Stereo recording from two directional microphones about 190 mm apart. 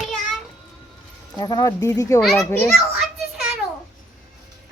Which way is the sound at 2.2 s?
Centre (ahead or behind).